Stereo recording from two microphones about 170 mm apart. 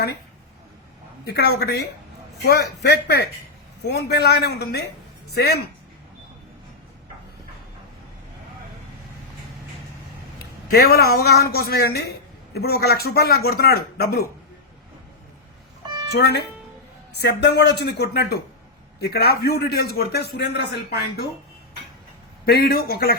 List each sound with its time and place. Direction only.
1.2 s speech: 75° left (ahead or behind)
10.7 s speech: 65° left (ahead or behind)
16.1 s speech: 75° left (ahead or behind)
22.4 s a man's voice: 65° left (ahead or behind)